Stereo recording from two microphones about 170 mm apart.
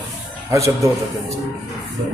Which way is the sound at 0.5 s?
20° right (ahead or behind).